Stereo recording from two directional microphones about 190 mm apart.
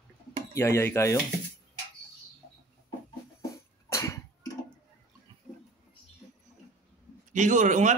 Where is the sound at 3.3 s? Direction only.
15° left (ahead or behind).